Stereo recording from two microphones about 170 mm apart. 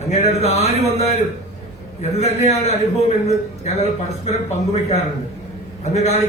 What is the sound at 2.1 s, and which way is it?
A man's voice, 40° left (ahead or behind).